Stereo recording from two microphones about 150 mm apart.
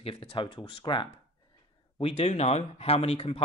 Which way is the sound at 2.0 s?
45° left (ahead or behind).